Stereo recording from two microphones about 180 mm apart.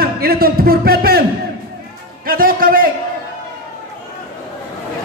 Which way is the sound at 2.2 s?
55° right (ahead or behind).